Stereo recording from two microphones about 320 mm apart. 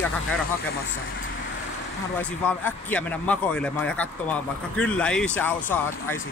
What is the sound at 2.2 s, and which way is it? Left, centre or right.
Speech, centre.